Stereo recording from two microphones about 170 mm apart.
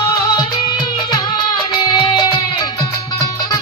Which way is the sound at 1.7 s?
25° left (ahead or behind).